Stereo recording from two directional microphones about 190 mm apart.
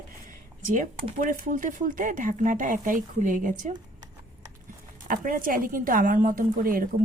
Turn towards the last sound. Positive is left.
turn(degrees=-50)  # may be behind; listen again after turning